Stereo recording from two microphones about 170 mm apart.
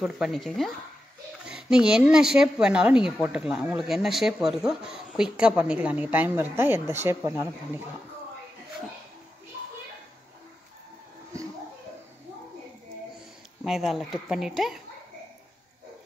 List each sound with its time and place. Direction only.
0.0 s speech: centre (ahead or behind); by 7.8 s 15° right (ahead or behind)
13.7 s speech: centre (ahead or behind)